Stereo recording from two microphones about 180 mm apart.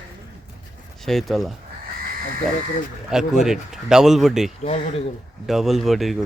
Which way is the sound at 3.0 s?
5° right (ahead or behind).